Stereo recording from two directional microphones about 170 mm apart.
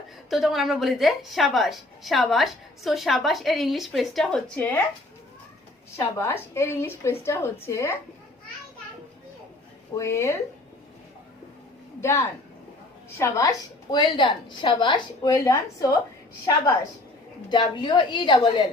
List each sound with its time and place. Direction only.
0.3 s a woman's voice: centre (ahead or behind)
6.0 s a woman's voice: 15° left (ahead or behind)
9.9 s a woman's voice: 15° left (ahead or behind)
11.9 s a woman's voice: 15° left (ahead or behind)
17.5 s a woman's voice: 25° left (ahead or behind)